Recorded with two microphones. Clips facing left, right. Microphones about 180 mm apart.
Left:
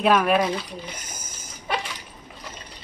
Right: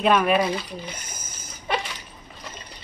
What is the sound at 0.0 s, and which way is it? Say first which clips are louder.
Speech: even; centre (ahead or behind).